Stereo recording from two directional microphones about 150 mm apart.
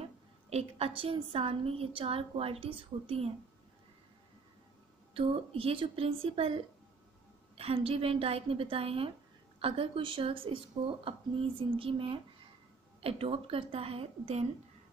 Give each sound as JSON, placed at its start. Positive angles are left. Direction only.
{"t": 0.0, "sound": "a woman's voice", "side_deg": -45}
{"t": 5.1, "sound": "a woman's voice", "side_deg": -40}